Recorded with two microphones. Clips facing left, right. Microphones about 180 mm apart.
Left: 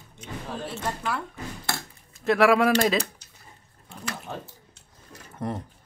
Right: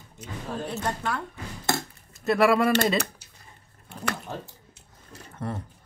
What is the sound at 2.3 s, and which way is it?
Speech, centre (ahead or behind).